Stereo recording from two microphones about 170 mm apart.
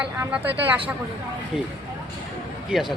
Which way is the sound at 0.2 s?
10° right (ahead or behind).